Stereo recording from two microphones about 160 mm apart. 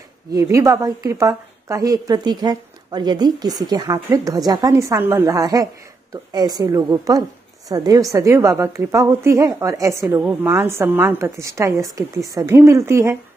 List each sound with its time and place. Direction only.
0.3 s a woman's voice: 20° right (ahead or behind)